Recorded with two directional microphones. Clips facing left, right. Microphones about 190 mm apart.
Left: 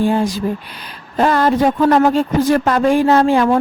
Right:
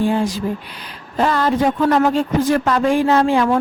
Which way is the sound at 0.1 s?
40° left (ahead or behind).